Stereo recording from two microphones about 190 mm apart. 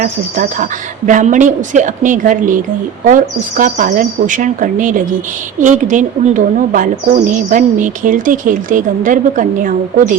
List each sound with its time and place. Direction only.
0.0 s speech: 45° right (ahead or behind)